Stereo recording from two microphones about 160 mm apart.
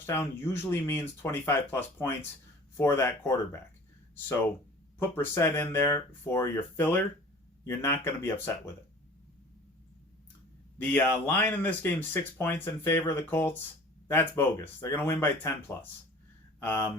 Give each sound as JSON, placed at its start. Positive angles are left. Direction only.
{"t": 0.4, "sound": "speech", "side_deg": 15}
{"t": 4.9, "sound": "speech", "side_deg": 15}
{"t": 10.9, "sound": "speech", "side_deg": 10}